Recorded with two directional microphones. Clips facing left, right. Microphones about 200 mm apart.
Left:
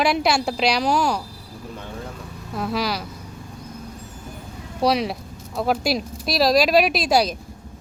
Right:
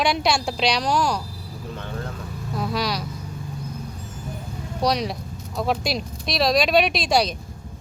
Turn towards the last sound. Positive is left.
turn(degrees=5)  # may be behind; listen again after turning